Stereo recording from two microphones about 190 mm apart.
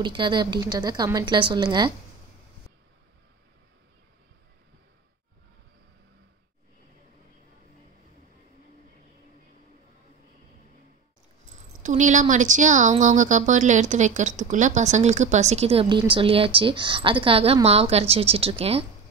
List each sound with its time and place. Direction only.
0.0 s speech: 25° right (ahead or behind)
11.8 s speech: 40° right (ahead or behind)